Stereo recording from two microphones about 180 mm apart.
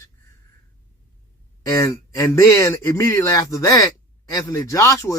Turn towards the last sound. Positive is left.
turn(degrees=15)  # may be behind; listen again after turning